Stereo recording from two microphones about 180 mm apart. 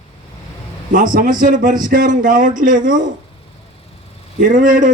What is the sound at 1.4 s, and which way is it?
Speech, 45° right (ahead or behind).